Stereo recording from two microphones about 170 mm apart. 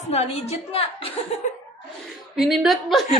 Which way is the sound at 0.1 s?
40° left (ahead or behind).